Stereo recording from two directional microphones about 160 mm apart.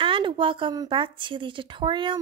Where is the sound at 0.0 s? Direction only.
30° right (ahead or behind).